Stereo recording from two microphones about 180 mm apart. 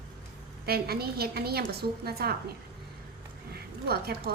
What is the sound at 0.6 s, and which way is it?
A woman's voice, 60° right (ahead or behind).